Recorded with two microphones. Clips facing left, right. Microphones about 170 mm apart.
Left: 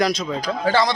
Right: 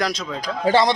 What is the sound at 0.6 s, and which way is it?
Speech, 25° right (ahead or behind).